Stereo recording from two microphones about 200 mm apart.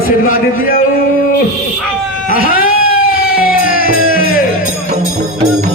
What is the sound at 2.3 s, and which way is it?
Music, 45° left (ahead or behind).